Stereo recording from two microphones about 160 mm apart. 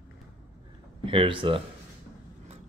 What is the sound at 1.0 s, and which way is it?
Speech, 30° right (ahead or behind).